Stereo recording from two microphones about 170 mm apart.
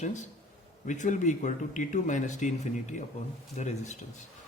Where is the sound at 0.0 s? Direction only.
45° left (ahead or behind).